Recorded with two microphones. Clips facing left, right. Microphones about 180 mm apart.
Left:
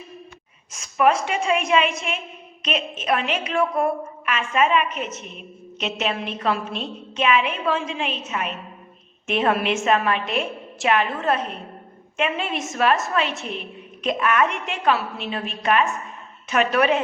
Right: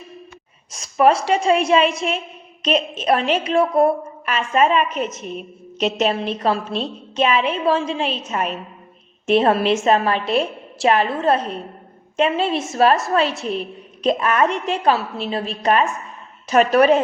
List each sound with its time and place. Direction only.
0.7 s a woman's voice: 35° right (ahead or behind)